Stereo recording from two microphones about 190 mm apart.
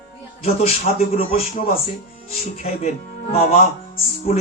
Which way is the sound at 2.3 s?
35° left (ahead or behind).